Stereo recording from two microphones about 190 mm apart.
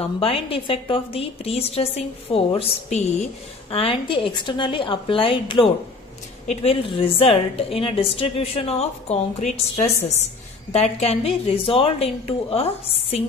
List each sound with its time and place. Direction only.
0.0 s a woman's voice: 30° left (ahead or behind)